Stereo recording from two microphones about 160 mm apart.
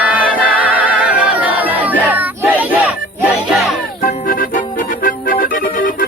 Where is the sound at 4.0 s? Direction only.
60° left (ahead or behind).